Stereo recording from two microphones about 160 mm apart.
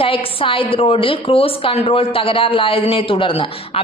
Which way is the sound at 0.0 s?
35° left (ahead or behind).